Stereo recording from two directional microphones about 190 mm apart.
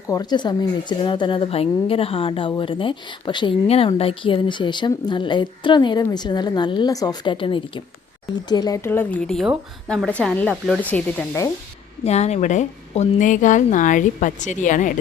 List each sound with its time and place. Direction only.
0.1 s a woman's voice: 20° left (ahead or behind)
12.0 s speech: 35° left (ahead or behind)